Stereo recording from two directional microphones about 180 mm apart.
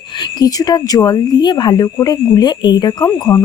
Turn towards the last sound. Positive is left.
turn(degrees=20)  # may be behind; listen again after turning